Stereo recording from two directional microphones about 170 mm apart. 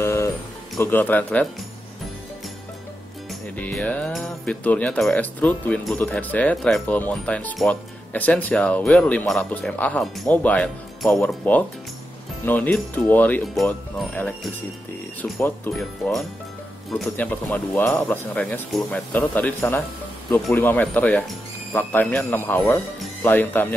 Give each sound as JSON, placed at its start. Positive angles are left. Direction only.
{"t": 0.0, "sound": "a sound", "side_deg": 15}
{"t": 0.7, "sound": "speech", "side_deg": 10}
{"t": 3.5, "sound": "speech", "side_deg": 10}